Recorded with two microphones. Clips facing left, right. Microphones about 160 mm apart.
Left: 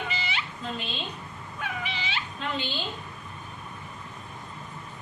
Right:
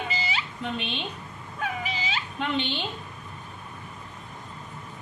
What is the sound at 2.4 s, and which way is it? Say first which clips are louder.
Speech: right 5 dB; 70° right (ahead or behind).